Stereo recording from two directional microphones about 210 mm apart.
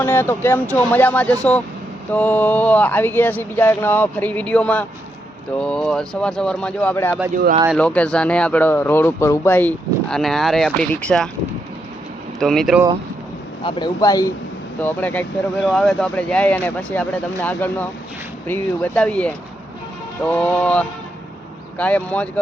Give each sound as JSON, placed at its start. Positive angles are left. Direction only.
{"t": 0.0, "sound": "speech", "side_deg": 10}
{"t": 12.4, "sound": "speech", "side_deg": 0}
{"t": 13.7, "sound": "speech", "side_deg": 20}